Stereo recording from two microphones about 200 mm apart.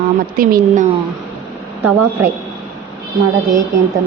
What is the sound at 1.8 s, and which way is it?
Speech, 10° right (ahead or behind).